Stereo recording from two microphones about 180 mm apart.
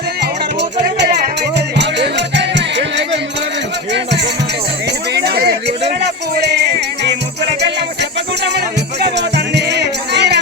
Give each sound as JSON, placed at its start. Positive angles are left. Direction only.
{"t": 0.2, "sound": "music", "side_deg": -70}
{"t": 4.9, "sound": "a sound", "side_deg": -65}
{"t": 6.0, "sound": "music", "side_deg": -65}